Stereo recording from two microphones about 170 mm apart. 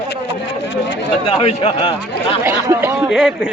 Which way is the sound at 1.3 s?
35° left (ahead or behind).